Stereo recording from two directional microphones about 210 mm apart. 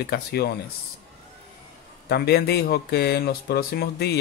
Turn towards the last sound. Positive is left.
turn(degrees=50)  # may be behind; listen again after turning